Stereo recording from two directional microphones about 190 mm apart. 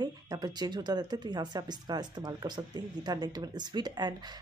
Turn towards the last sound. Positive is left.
turn(degrees=-20)  # may be behind; listen again after turning